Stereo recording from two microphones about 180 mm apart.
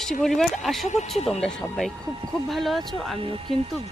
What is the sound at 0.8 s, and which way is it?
Speech, 40° left (ahead or behind).